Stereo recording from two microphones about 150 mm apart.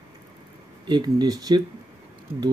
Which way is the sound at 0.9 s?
30° right (ahead or behind).